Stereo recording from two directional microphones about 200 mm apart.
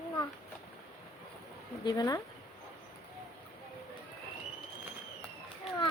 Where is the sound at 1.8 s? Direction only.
20° left (ahead or behind).